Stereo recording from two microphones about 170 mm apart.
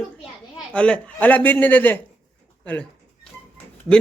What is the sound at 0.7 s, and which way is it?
A man's voice, 5° left (ahead or behind).